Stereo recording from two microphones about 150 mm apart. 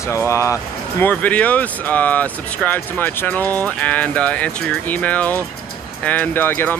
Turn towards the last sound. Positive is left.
turn(degrees=15)  # may be behind; listen again after turning